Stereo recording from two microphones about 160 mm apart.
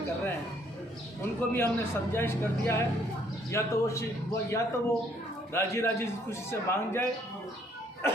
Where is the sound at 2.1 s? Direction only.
15° left (ahead or behind).